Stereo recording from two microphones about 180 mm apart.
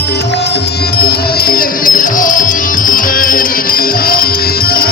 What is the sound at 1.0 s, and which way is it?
Music, 60° left (ahead or behind).